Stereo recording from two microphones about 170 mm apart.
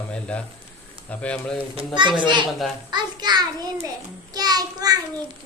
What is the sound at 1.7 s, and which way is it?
A child's voice, 25° right (ahead or behind).